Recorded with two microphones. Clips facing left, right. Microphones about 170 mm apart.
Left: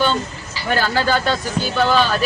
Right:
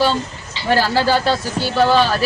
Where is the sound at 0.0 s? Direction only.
35° right (ahead or behind).